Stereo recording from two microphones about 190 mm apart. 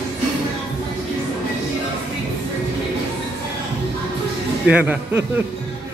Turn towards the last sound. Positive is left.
turn(degrees=-10)  # may be behind; listen again after turning